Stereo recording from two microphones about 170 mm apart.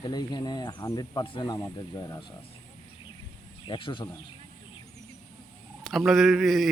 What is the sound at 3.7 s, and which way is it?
Speech, 30° left (ahead or behind).